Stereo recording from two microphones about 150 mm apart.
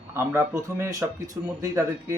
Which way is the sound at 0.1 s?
15° right (ahead or behind).